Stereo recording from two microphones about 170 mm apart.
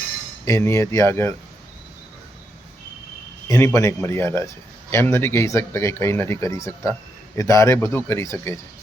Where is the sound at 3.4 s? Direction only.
15° left (ahead or behind).